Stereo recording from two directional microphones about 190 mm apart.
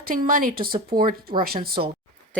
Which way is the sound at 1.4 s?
50° right (ahead or behind).